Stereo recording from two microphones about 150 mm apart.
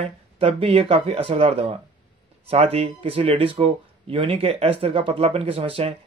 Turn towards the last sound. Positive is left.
turn(degrees=-40)  # may be behind; listen again after turning